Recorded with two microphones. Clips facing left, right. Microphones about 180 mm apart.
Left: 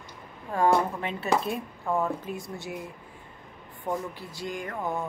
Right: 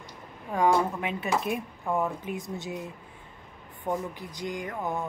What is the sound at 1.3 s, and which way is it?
Speech, 15° right (ahead or behind).